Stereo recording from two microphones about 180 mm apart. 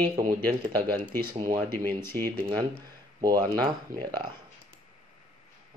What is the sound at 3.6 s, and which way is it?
Speech, 25° right (ahead or behind).